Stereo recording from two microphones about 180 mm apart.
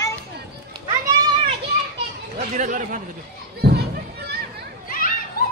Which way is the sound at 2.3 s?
45° right (ahead or behind).